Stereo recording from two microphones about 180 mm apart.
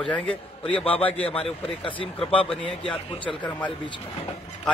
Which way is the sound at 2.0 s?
30° left (ahead or behind).